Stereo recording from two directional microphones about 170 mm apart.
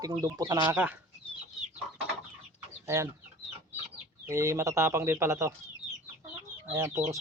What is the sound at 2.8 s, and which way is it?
Speech, 15° right (ahead or behind).